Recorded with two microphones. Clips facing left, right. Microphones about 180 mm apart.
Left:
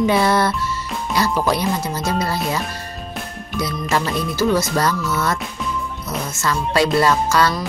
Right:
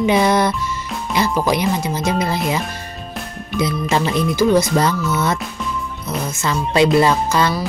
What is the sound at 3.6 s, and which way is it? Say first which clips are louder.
Speech: right 3 dB; 20° right (ahead or behind).